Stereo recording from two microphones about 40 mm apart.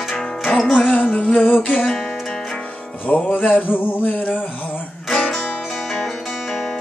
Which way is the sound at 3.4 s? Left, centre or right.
Left.